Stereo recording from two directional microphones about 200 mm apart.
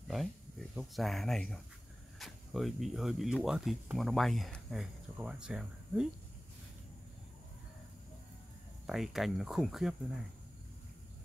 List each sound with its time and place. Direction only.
0.1 s speech: centre (ahead or behind)
8.8 s speech: centre (ahead or behind)